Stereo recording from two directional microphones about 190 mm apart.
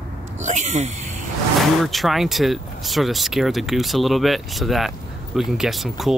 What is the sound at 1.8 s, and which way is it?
Speech, centre (ahead or behind).